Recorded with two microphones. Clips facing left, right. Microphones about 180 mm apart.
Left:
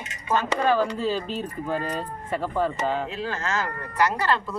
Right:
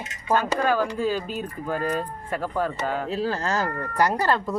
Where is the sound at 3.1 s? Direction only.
35° right (ahead or behind).